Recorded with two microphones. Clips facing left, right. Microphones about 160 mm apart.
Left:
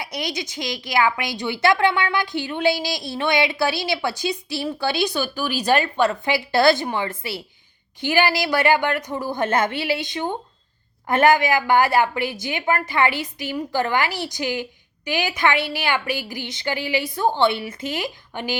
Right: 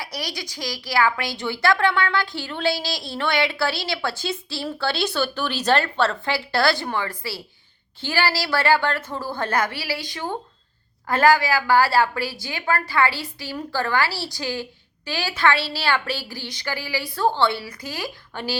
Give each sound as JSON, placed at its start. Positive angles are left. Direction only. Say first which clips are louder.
{"t": 0.0, "sound": "a woman's voice", "louder": "left 4 dB", "side_deg": 20}